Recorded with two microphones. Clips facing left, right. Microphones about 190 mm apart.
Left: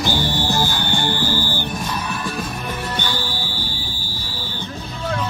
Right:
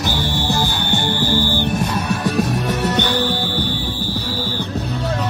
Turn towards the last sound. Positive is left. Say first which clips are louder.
# right 9 dB
turn(degrees=-65)  # may be behind; listen again after turning